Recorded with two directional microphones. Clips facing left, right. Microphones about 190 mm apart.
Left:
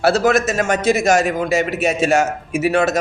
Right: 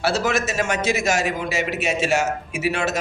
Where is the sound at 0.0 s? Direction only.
50° left (ahead or behind).